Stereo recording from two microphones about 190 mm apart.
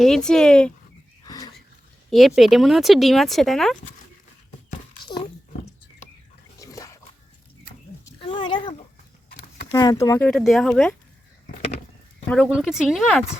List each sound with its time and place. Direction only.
0.0 s speech: centre (ahead or behind)
1.2 s a sound: 20° left (ahead or behind)
2.0 s speech: centre (ahead or behind)
6.6 s splash: 15° left (ahead or behind)
8.0 s a sound: 25° left (ahead or behind)
9.7 s speech: 20° left (ahead or behind); by 10.9 s 5° left (ahead or behind)
12.3 s speech: centre (ahead or behind)